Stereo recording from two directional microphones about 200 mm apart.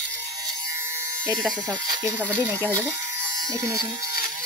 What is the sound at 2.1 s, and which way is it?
Speech, 10° right (ahead or behind).